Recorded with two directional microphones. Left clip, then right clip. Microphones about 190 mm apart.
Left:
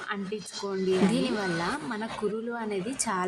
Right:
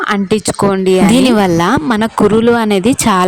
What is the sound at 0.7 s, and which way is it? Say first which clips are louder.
Speech: right 14 dB; 60° right (ahead or behind).